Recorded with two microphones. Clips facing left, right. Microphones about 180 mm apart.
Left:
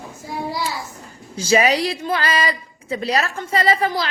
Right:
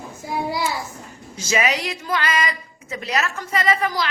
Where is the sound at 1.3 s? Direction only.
30° left (ahead or behind).